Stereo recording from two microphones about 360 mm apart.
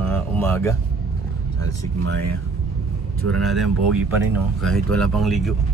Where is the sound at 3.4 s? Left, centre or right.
Centre.